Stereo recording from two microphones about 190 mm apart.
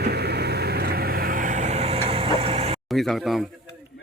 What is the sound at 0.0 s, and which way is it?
Vehicle, 60° right (ahead or behind).